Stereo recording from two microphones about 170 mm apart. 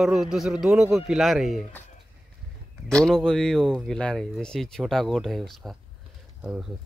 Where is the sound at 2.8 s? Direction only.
5° left (ahead or behind).